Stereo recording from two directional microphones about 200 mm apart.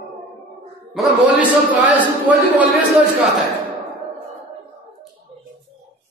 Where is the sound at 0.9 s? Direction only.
5° right (ahead or behind).